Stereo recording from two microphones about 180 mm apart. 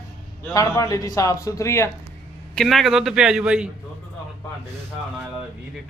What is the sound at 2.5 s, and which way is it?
A man's voice, centre (ahead or behind).